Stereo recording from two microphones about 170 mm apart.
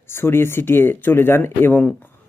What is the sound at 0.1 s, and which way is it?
A man's voice, 15° left (ahead or behind).